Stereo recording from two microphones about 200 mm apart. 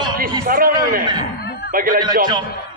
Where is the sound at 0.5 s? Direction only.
45° right (ahead or behind).